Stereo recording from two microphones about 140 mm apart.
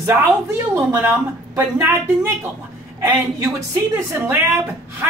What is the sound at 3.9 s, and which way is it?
Speech, 15° right (ahead or behind).